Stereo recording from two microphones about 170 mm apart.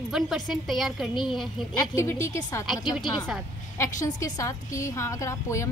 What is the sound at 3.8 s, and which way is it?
A woman's voice, 20° left (ahead or behind).